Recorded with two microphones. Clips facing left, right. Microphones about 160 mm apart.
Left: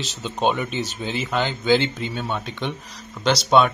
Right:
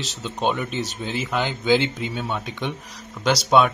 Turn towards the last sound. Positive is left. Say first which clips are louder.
# even
turn(degrees=-10)  # may be behind; listen again after turning